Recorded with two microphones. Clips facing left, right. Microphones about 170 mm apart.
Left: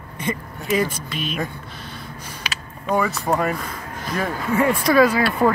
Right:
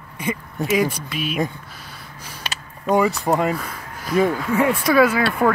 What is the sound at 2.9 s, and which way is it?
Speech, 20° right (ahead or behind).